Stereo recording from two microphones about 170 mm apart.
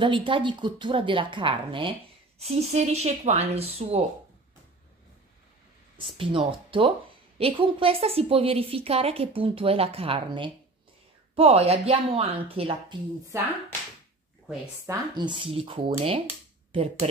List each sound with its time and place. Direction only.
0.0 s speech: 30° right (ahead or behind)
6.1 s speech: 30° right (ahead or behind)
13.3 s speech: 15° right (ahead or behind)
14.9 s a woman's voice: 25° right (ahead or behind)